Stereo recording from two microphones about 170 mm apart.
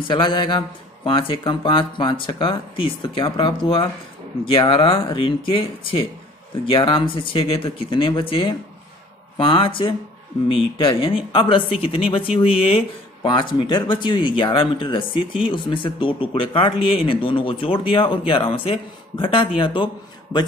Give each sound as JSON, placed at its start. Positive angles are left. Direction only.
{"t": 0.1, "sound": "speech", "side_deg": 30}